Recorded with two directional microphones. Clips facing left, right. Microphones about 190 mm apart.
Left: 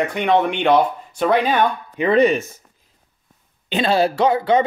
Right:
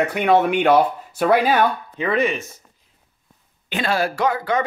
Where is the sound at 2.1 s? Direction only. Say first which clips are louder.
Left 6 dB; 35° left (ahead or behind).